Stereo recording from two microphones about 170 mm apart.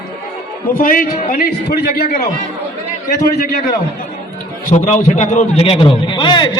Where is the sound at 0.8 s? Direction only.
55° left (ahead or behind).